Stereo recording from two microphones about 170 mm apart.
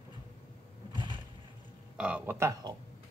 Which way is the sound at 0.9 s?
30° right (ahead or behind).